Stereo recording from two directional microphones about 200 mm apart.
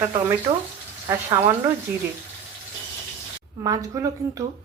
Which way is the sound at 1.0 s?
15° right (ahead or behind).